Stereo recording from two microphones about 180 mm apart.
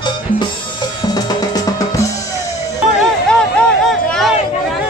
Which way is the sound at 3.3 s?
5° left (ahead or behind).